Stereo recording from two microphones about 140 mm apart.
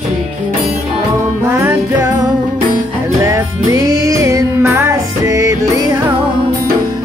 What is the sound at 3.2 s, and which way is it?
Music, 20° right (ahead or behind).